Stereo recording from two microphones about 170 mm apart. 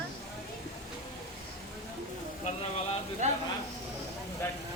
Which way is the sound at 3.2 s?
45° right (ahead or behind).